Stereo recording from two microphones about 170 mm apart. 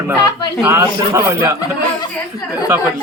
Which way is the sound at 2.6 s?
10° right (ahead or behind).